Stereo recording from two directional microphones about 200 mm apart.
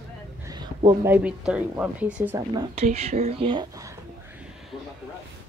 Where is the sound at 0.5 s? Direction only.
20° right (ahead or behind).